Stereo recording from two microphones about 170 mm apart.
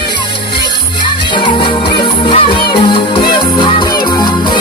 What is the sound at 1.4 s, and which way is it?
Music, 30° left (ahead or behind).